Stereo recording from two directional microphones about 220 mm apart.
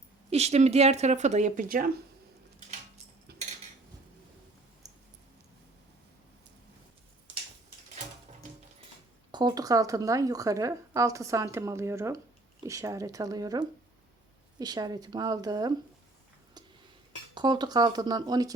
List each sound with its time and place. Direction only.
0.3 s speech: 30° right (ahead or behind)
3.3 s a sound: 45° right (ahead or behind)
9.3 s speech: 20° right (ahead or behind)
17.3 s speech: 20° right (ahead or behind)